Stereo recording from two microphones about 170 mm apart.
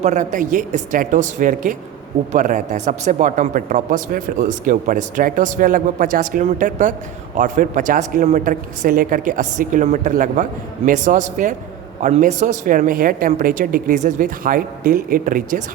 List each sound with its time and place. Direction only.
0.0 s a man's voice: 45° right (ahead or behind)